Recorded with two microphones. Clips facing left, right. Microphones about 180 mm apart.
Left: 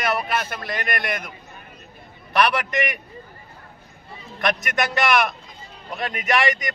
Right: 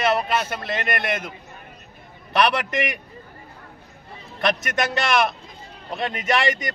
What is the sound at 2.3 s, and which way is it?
Speech, 25° right (ahead or behind).